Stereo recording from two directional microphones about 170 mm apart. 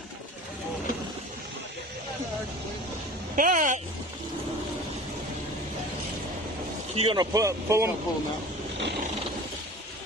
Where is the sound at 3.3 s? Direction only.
50° right (ahead or behind).